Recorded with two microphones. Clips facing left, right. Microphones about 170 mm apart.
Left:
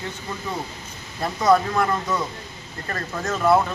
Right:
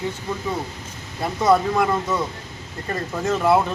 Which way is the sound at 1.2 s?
5° right (ahead or behind).